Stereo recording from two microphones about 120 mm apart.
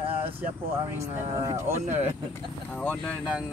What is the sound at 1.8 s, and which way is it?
Speech, 70° right (ahead or behind).